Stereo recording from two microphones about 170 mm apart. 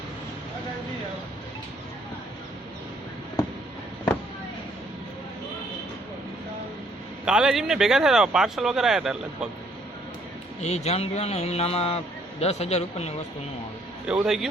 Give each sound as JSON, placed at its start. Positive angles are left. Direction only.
{"t": 7.3, "sound": "speech", "side_deg": -5}
{"t": 10.6, "sound": "a man's voice", "side_deg": 40}
{"t": 14.1, "sound": "speech", "side_deg": -5}